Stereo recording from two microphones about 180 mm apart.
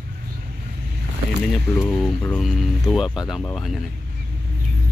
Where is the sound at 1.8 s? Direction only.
10° left (ahead or behind).